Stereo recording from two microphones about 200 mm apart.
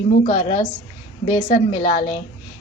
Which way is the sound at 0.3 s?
25° left (ahead or behind).